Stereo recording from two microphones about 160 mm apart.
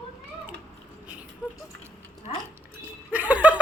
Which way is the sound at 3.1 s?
10° right (ahead or behind).